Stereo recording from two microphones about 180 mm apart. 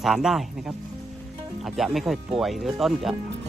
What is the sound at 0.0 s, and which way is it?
Speech, centre (ahead or behind).